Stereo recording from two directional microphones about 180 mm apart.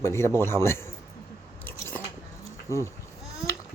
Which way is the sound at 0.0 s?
15° left (ahead or behind).